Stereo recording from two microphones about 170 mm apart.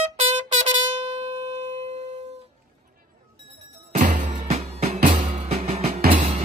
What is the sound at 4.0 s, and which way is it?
Music, 50° right (ahead or behind).